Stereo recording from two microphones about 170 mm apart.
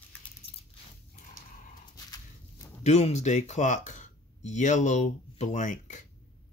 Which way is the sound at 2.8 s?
40° left (ahead or behind).